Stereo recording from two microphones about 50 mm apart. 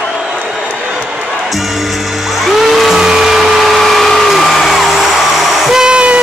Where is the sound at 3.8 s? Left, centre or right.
Centre.